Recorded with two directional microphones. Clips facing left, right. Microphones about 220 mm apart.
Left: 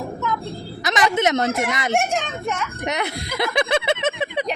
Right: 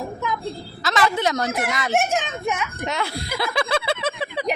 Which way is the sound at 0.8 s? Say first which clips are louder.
Left 2 dB; 20° left (ahead or behind).